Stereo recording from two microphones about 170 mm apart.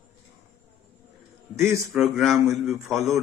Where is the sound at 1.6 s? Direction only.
Centre (ahead or behind).